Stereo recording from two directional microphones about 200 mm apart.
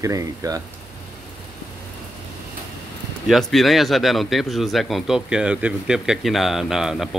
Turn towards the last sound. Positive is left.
turn(degrees=0)  # may be behind; listen again after turning